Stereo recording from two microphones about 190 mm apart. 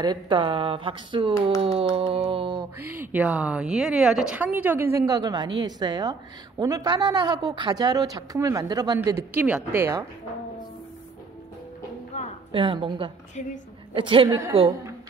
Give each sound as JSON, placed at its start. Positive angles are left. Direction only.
{"t": 0.0, "sound": "a woman's voice", "side_deg": -25}
{"t": 2.8, "sound": "a woman's voice", "side_deg": -10}
{"t": 12.1, "sound": "a sound", "side_deg": 35}
{"t": 12.5, "sound": "a woman's voice", "side_deg": -25}